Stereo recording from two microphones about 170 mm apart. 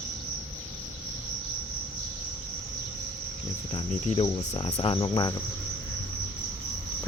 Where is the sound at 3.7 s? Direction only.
35° left (ahead or behind).